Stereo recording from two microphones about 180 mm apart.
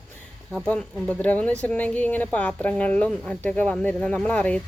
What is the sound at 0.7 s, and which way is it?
A woman's voice, 5° left (ahead or behind).